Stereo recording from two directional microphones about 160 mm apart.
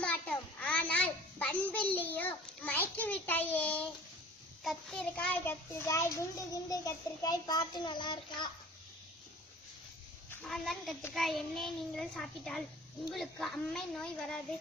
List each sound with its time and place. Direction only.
0.0 s a sound: 10° left (ahead or behind)
4.6 s a child's voice: centre (ahead or behind); by 8.4 s 30° left (ahead or behind)
10.4 s a child's voice: centre (ahead or behind)